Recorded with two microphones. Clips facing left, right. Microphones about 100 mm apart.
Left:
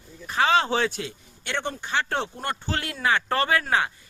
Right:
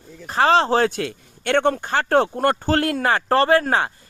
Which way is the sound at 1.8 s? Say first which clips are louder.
Right 9 dB; 45° right (ahead or behind).